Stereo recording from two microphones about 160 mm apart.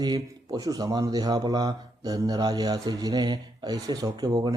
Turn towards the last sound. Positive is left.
turn(degrees=-25)  # may be behind; listen again after turning